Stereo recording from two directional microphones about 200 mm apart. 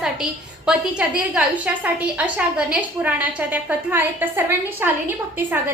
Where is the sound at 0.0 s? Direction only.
5° right (ahead or behind).